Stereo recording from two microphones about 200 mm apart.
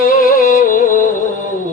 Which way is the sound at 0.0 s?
45° left (ahead or behind).